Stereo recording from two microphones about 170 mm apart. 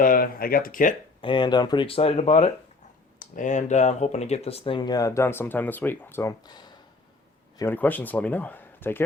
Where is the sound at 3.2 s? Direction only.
50° left (ahead or behind); by 6.7 s 25° left (ahead or behind).